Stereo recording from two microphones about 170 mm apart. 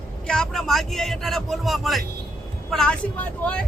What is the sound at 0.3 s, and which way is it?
Speech, 5° left (ahead or behind).